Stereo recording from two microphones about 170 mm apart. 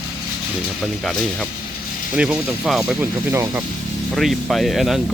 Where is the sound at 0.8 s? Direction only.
Centre (ahead or behind).